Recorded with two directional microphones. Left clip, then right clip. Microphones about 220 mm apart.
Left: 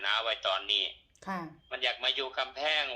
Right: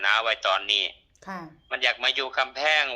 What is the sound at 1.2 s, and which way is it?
Speech, 5° left (ahead or behind).